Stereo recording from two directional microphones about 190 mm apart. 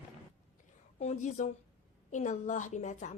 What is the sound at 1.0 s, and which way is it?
A woman's voice, 40° left (ahead or behind).